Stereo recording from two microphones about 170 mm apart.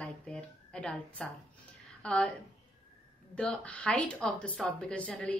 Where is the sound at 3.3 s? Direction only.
5° left (ahead or behind).